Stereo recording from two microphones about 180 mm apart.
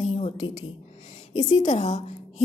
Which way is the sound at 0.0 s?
35° left (ahead or behind).